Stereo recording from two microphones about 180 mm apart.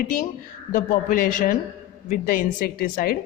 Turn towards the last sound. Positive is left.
turn(degrees=50)  # may be behind; listen again after turning